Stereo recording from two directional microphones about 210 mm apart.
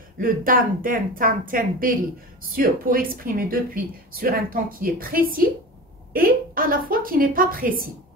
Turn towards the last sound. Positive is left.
turn(degrees=-40)  # may be behind; listen again after turning